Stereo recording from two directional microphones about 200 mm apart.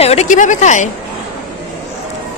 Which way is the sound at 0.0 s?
35° left (ahead or behind).